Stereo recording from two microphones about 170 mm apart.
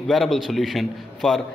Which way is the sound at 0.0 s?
Centre (ahead or behind).